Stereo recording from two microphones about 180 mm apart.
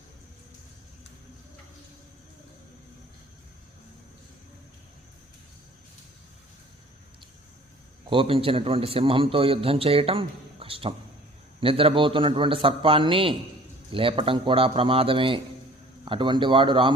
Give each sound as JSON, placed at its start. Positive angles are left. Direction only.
{"t": 8.1, "sound": "a man's voice", "side_deg": -30}